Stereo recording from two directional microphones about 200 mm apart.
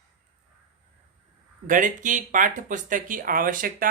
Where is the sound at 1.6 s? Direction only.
40° right (ahead or behind).